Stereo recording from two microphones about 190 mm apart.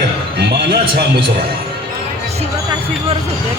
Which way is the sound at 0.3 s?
60° right (ahead or behind).